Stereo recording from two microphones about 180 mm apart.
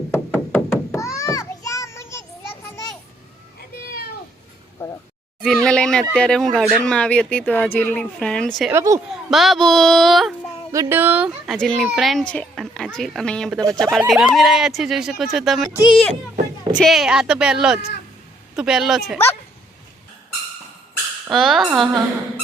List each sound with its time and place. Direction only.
0.1 s children playing: 10° left (ahead or behind)
5.4 s speech: 5° left (ahead or behind)
8.7 s speech: 15° right (ahead or behind)
9.3 s speech: centre (ahead or behind)
10.7 s speech: 15° right (ahead or behind)
15.8 s speech: 25° left (ahead or behind)
16.7 s speech: centre (ahead or behind)
21.2 s speech: centre (ahead or behind)